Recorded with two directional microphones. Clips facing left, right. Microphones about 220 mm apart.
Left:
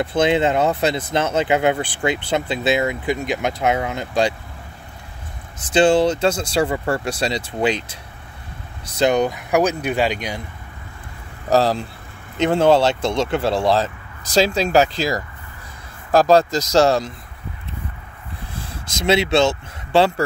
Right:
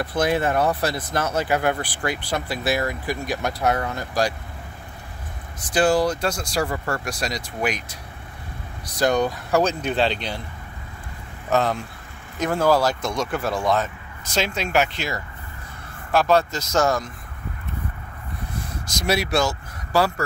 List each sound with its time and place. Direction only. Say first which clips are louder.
0.0 s speech: left 4 dB; 25° left (ahead or behind)
5.6 s speech: left 4 dB; 25° left (ahead or behind)
11.5 s speech: left 4 dB; 35° left (ahead or behind)
16.1 s speech: left 5 dB; 35° left (ahead or behind)
18.5 s speech: right 1 dB; 30° left (ahead or behind)